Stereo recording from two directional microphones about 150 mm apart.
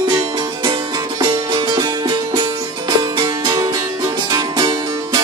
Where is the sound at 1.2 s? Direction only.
30° right (ahead or behind).